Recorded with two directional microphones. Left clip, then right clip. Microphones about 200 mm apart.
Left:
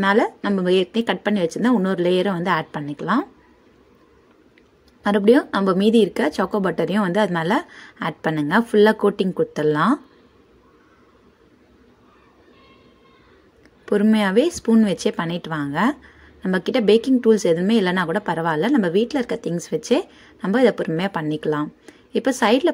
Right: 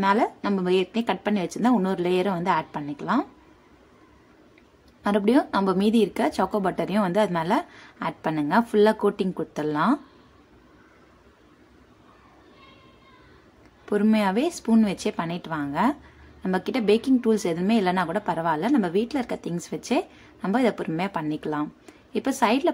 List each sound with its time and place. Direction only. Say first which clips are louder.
0.0 s a woman's voice: left 4 dB; 20° left (ahead or behind)
5.0 s a woman's voice: left 6 dB; 15° left (ahead or behind)
13.8 s speech: left 4 dB; 20° left (ahead or behind)